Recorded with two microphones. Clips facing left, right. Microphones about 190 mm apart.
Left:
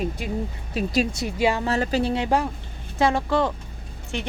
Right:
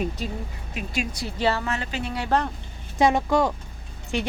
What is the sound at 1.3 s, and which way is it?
Speech, 10° left (ahead or behind).